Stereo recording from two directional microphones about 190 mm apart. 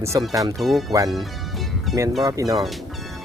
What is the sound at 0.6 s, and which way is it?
Speech, centre (ahead or behind).